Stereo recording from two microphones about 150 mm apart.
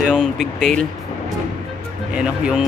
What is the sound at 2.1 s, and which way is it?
Speech, 5° right (ahead or behind).